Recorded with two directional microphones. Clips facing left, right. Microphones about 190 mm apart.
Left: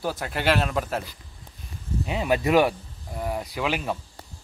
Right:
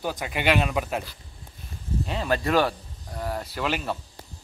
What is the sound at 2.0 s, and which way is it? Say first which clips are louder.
A man's voice: left 3 dB; 15° left (ahead or behind).